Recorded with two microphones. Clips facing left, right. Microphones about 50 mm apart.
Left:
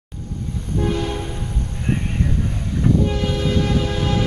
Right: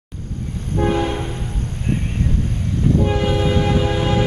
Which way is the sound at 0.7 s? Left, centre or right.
Right.